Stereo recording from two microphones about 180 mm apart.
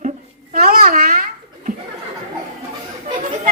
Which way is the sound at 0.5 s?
55° right (ahead or behind).